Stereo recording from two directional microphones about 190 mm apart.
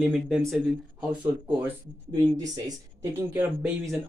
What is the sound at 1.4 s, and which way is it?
Speech, 15° right (ahead or behind).